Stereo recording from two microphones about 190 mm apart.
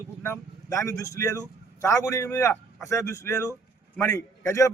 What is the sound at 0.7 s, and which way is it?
A man's voice, 15° left (ahead or behind).